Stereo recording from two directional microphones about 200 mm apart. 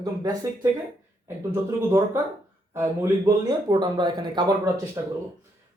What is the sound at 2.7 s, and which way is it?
Speech, 15° right (ahead or behind).